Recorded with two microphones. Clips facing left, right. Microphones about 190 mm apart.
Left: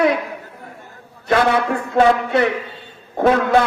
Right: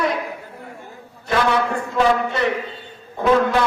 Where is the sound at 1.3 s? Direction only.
60° left (ahead or behind).